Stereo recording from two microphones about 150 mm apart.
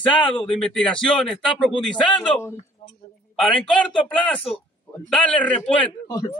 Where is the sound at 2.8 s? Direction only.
35° left (ahead or behind).